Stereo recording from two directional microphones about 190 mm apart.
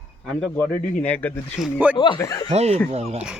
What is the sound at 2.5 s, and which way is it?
Speech, 35° right (ahead or behind).